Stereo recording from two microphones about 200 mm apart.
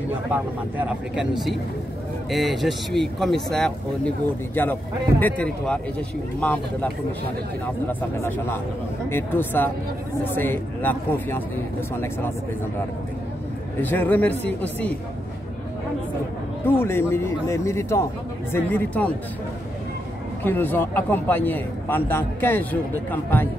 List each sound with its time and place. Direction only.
0.3 s speech: 5° right (ahead or behind)
5.2 s a man's voice: 5° left (ahead or behind)
8.2 s a man's voice: 10° left (ahead or behind)
13.7 s a man's voice: 10° left (ahead or behind)
16.6 s a man's voice: 10° left (ahead or behind)
20.4 s a man's voice: 10° left (ahead or behind)